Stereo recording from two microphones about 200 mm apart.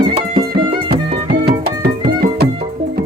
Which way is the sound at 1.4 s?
50° right (ahead or behind).